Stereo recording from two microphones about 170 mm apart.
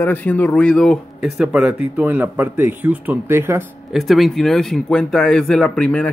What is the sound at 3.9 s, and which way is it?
Speech, centre (ahead or behind).